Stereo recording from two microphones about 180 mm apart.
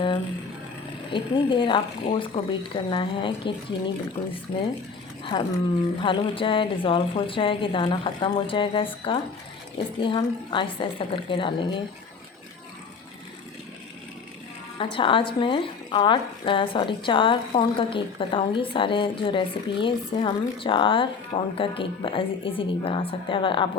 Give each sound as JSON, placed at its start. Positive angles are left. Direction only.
{"t": 1.1, "sound": "a woman's voice", "side_deg": 25}
{"t": 5.3, "sound": "a woman's voice", "side_deg": 25}
{"t": 14.8, "sound": "a woman's voice", "side_deg": 30}